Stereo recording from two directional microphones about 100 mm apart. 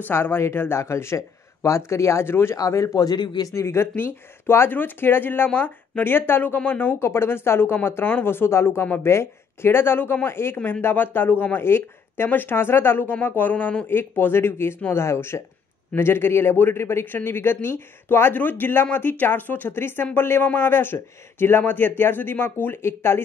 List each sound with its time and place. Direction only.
0.1 s speech: 25° left (ahead or behind); by 3.4 s 40° left (ahead or behind)
3.5 s speech: 25° left (ahead or behind)